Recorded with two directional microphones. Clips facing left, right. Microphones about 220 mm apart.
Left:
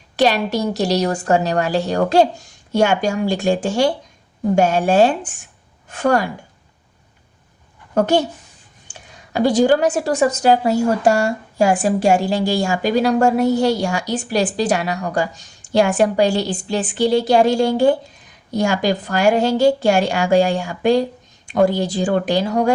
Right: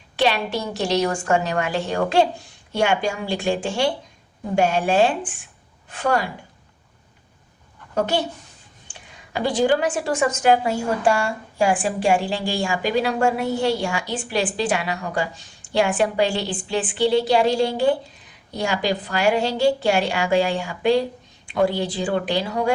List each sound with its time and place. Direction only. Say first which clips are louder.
0.2 s a woman's voice: left 5 dB; 40° left (ahead or behind)
7.9 s a woman's voice: left 6 dB; 45° left (ahead or behind)